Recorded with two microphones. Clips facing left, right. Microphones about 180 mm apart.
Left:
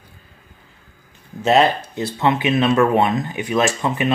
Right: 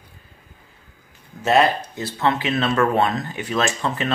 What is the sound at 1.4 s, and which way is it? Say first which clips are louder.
Speech: left 2 dB; 20° left (ahead or behind).